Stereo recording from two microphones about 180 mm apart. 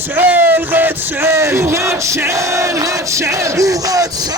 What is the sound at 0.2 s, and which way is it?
Music, 10° right (ahead or behind).